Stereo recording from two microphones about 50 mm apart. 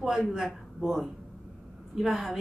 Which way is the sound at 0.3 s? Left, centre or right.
Centre.